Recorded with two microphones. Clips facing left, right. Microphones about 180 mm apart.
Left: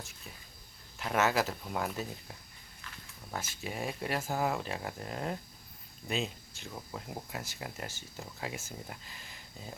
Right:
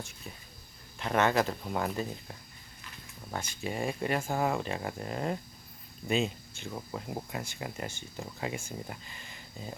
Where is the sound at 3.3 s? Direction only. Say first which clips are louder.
Right 4 dB; 5° left (ahead or behind).